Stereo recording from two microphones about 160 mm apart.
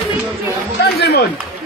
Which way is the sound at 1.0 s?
90° left.